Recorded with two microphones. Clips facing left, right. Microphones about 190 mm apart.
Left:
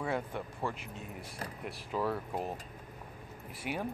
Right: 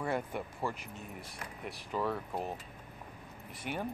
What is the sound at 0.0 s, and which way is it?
Speech, 5° right (ahead or behind).